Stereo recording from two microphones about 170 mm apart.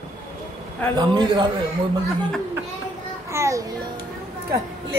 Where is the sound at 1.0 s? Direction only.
25° right (ahead or behind).